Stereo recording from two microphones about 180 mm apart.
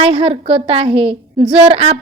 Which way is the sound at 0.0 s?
30° right (ahead or behind).